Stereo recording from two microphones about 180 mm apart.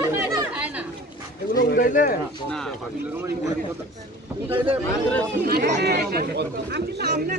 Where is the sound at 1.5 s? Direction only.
50° left (ahead or behind).